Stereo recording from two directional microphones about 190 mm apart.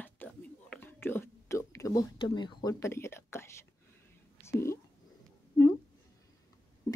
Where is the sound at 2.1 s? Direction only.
25° left (ahead or behind).